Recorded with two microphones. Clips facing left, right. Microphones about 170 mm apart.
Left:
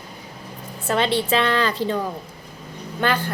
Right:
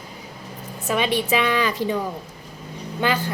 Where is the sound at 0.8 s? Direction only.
15° right (ahead or behind).